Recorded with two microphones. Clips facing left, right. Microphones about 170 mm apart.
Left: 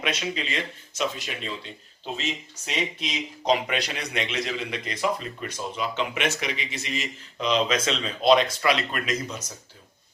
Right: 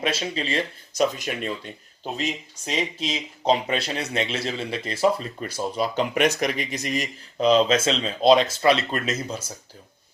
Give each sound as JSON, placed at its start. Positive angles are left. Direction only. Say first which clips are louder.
{"t": 0.0, "sound": "speech", "louder": "right 3 dB", "side_deg": -30}
{"t": 2.1, "sound": "speech", "louder": "right 4 dB", "side_deg": -35}